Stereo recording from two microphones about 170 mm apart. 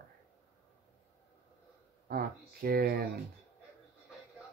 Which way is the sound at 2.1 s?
60° right (ahead or behind).